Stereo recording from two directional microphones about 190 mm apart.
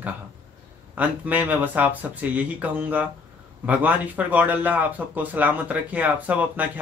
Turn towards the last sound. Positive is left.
turn(degrees=-10)  # may be behind; listen again after turning